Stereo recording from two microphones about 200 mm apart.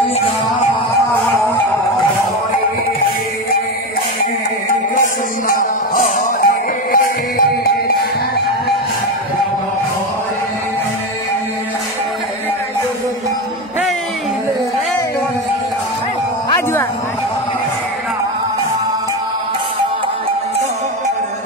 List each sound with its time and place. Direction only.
4.9 s music: 40° left (ahead or behind)
16.4 s music: 15° left (ahead or behind)